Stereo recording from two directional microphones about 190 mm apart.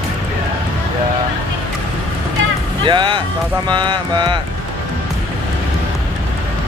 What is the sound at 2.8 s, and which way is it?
Speech, 25° right (ahead or behind).